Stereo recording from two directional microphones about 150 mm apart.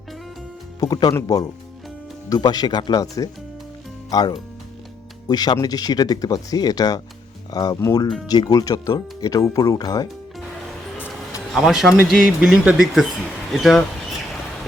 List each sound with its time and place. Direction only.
0.8 s speech: 25° left (ahead or behind)
10.9 s a sound: 15° left (ahead or behind)
11.5 s speech: centre (ahead or behind)